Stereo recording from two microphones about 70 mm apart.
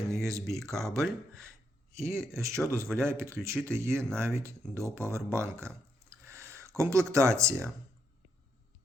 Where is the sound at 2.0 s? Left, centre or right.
Right.